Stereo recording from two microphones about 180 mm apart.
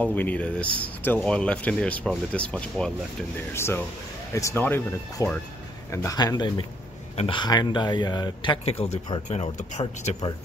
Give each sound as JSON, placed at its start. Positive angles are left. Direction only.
{"t": 0.0, "sound": "speech", "side_deg": 10}